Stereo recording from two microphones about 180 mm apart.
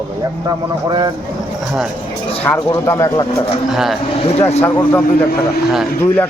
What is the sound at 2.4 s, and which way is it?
Speech, 10° left (ahead or behind).